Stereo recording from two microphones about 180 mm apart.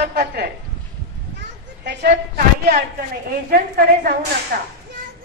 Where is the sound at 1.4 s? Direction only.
65° right (ahead or behind).